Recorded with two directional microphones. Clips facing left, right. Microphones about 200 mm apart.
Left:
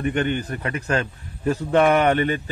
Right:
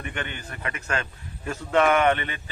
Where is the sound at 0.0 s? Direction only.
40° left (ahead or behind).